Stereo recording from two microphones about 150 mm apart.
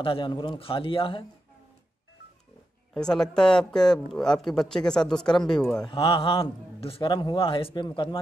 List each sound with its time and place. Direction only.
0.0 s a man's voice: 35° left (ahead or behind)
2.9 s speech: 5° left (ahead or behind)
5.9 s a man's voice: 35° left (ahead or behind)